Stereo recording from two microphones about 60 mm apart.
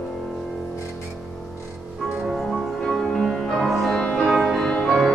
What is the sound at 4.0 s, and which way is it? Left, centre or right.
Music, centre.